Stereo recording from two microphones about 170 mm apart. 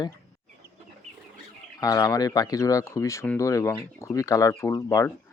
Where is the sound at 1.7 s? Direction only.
20° left (ahead or behind).